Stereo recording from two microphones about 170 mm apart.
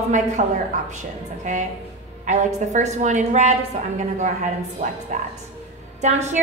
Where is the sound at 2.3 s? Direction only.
45° right (ahead or behind).